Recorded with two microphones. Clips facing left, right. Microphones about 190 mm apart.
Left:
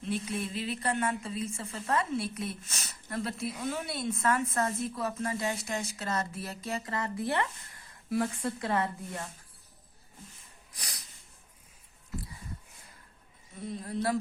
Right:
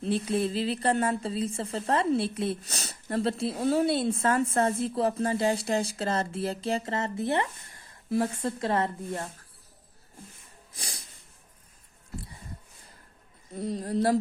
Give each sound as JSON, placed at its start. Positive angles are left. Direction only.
{"t": 0.0, "sound": "a woman's voice", "side_deg": -30}
{"t": 10.8, "sound": "snort", "side_deg": -25}
{"t": 13.6, "sound": "speech", "side_deg": -35}